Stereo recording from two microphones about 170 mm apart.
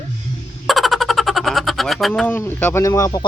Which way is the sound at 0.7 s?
Centre (ahead or behind).